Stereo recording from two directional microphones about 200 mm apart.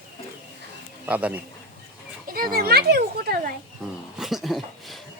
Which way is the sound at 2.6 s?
50° right (ahead or behind).